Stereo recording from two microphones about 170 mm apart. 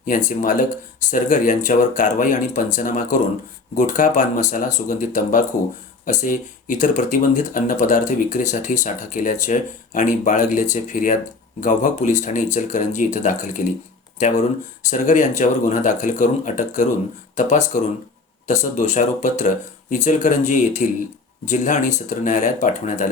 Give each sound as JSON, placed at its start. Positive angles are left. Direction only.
{"t": 0.0, "sound": "speech", "side_deg": 50}
{"t": 14.8, "sound": "speech", "side_deg": 45}